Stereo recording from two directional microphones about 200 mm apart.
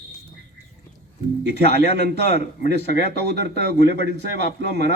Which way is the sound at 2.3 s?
40° left (ahead or behind).